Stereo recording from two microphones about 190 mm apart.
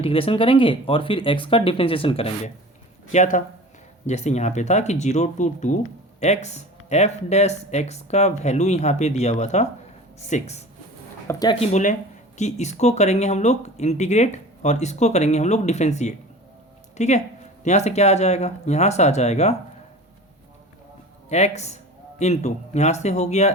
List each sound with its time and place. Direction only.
0.0 s speech: 30° left (ahead or behind)
3.1 s speech: 40° left (ahead or behind)
11.3 s speech: 20° left (ahead or behind)
11.6 s speech: 40° left (ahead or behind)
21.2 s speech: 35° left (ahead or behind)